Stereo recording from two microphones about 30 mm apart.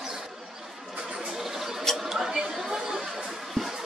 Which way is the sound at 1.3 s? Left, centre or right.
Centre.